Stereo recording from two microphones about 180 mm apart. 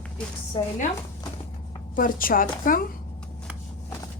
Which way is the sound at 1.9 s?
50° left (ahead or behind).